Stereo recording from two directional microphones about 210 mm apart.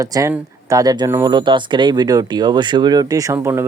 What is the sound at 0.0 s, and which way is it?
Speech, 15° right (ahead or behind).